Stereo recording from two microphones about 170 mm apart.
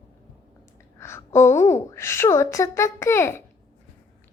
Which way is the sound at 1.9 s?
15° left (ahead or behind).